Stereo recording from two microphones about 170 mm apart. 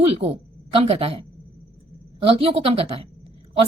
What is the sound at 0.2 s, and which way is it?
A woman's voice, 35° right (ahead or behind).